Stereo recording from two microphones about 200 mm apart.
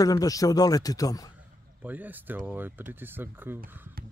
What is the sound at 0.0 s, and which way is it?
Speech, 20° left (ahead or behind).